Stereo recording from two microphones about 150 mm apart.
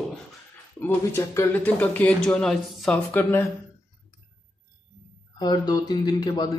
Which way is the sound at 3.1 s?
15° left (ahead or behind).